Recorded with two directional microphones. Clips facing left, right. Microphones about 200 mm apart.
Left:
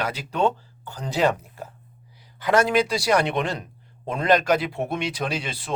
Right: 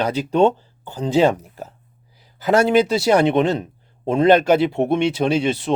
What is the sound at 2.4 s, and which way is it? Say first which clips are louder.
Speech: right 5 dB; 25° right (ahead or behind).